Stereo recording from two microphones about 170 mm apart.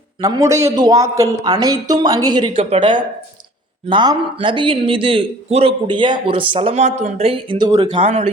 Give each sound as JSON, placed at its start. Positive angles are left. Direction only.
{"t": 0.2, "sound": "speech", "side_deg": -20}